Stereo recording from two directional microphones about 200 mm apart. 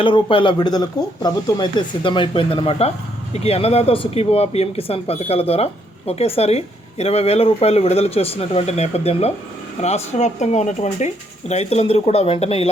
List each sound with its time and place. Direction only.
0.0 s a woman's voice: 25° left (ahead or behind)